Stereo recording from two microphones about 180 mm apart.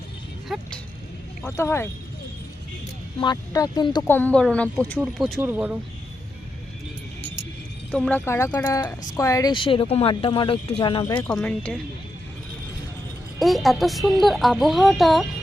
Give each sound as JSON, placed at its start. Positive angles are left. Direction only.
{"t": 0.4, "sound": "music", "side_deg": 0}
{"t": 1.5, "sound": "speech", "side_deg": 15}
{"t": 3.2, "sound": "a woman's voice", "side_deg": 20}
{"t": 4.1, "sound": "speech", "side_deg": 10}
{"t": 5.4, "sound": "speech", "side_deg": -10}
{"t": 7.9, "sound": "a woman's voice", "side_deg": 5}
{"t": 11.2, "sound": "speech", "side_deg": 5}
{"t": 13.4, "sound": "speech", "side_deg": 0}